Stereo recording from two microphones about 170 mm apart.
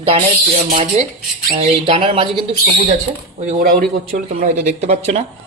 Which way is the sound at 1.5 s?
35° right (ahead or behind).